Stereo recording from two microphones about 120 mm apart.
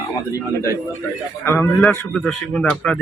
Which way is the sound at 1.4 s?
20° left (ahead or behind).